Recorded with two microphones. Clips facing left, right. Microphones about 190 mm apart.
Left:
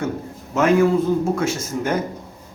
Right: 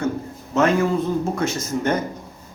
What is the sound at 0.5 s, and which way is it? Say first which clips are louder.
A man's voice: left 3 dB; 10° left (ahead or behind).